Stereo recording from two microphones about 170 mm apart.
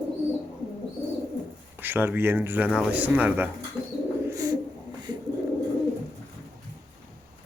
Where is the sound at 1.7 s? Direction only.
10° right (ahead or behind).